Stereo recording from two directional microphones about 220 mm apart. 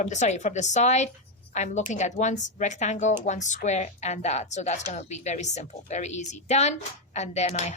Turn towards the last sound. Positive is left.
turn(degrees=30)  # may be behind; listen again after turning